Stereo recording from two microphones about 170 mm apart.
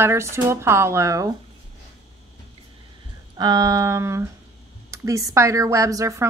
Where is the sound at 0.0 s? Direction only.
15° right (ahead or behind).